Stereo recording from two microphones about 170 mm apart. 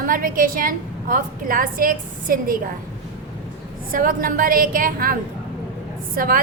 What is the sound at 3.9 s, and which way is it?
A woman's voice, 55° right (ahead or behind).